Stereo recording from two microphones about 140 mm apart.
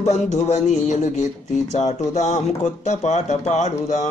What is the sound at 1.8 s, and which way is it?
Speech, 25° left (ahead or behind).